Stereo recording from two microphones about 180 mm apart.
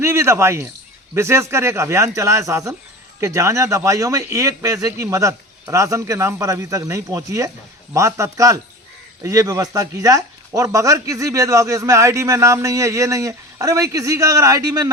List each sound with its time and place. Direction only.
0.0 s a man's voice: 15° right (ahead or behind)